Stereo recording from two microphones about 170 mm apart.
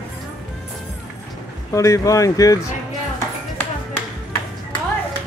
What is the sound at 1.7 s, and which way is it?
Speech, 20° left (ahead or behind).